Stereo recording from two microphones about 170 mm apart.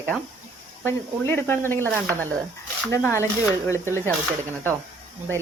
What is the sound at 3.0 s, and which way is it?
Speech, 15° left (ahead or behind).